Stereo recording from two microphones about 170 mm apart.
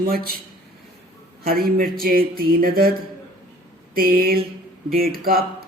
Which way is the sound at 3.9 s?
60° right (ahead or behind).